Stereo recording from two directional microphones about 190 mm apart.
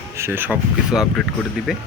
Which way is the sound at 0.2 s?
10° right (ahead or behind).